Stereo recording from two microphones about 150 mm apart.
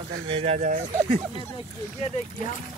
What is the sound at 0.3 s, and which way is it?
Speech, 40° right (ahead or behind).